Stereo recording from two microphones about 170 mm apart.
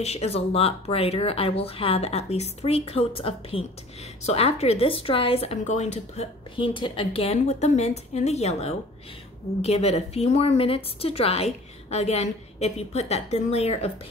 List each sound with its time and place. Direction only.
0.0 s a woman's voice: 40° left (ahead or behind)
6.5 s a woman's voice: 30° left (ahead or behind)